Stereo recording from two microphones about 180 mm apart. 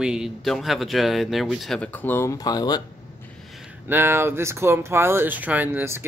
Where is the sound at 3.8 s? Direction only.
10° right (ahead or behind).